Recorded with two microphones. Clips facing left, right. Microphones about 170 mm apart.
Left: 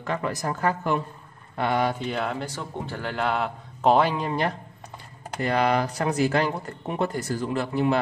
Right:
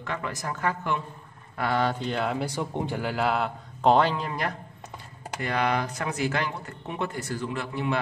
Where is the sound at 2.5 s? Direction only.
15° right (ahead or behind); by 4.2 s 10° left (ahead or behind).